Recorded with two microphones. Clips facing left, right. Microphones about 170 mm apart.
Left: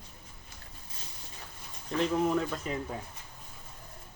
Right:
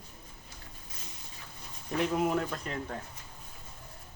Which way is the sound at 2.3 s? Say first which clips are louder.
Left 2 dB; centre (ahead or behind).